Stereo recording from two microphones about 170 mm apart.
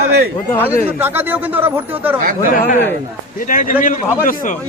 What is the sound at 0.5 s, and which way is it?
Speech, 10° left (ahead or behind).